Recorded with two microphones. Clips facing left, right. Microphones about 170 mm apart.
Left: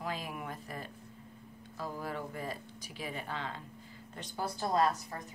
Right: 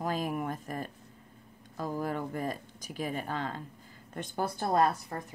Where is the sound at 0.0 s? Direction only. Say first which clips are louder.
Right 7 dB; 45° right (ahead or behind).